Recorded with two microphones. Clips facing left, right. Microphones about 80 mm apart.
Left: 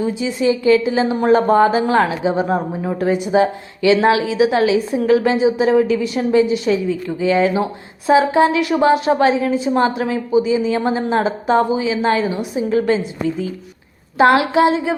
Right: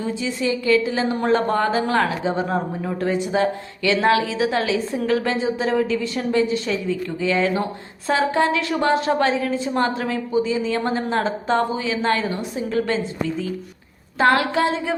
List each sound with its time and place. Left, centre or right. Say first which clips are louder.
0.2 s a woman's voice: left 6 dB; centre